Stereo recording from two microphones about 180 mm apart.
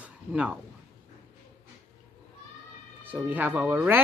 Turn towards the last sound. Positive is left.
turn(degrees=-10)  # may be behind; listen again after turning